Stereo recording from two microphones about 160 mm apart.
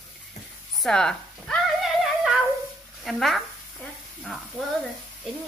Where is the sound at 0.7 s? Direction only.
5° left (ahead or behind).